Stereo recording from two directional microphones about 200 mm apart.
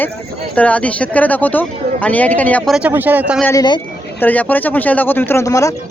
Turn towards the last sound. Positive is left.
turn(degrees=15)  # may be behind; listen again after turning